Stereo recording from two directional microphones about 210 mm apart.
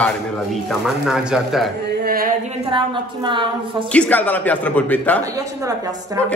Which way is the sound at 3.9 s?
5° left (ahead or behind).